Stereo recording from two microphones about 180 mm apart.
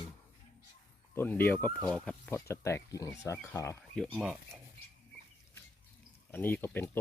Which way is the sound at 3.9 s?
Centre (ahead or behind).